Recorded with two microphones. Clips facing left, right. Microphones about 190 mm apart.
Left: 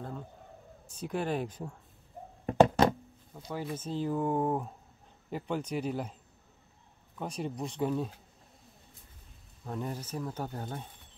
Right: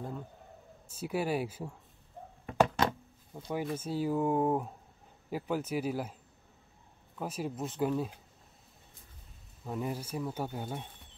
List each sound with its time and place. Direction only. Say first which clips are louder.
0.8 s speech: right 1 dB; 5° right (ahead or behind)
2.5 s knock: left 5 dB; 20° left (ahead or behind)
3.3 s speech: right 2 dB; 15° right (ahead or behind)
7.2 s speech: even; 5° right (ahead or behind)
9.7 s speech: right 1 dB; 5° right (ahead or behind)